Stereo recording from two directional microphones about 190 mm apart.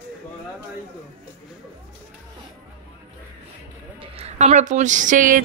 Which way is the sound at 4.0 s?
35° right (ahead or behind).